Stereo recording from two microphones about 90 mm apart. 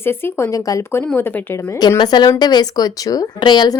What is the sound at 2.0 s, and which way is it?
A woman's voice, 55° left (ahead or behind).